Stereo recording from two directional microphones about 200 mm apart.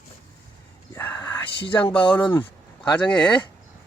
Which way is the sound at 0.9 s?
15° left (ahead or behind).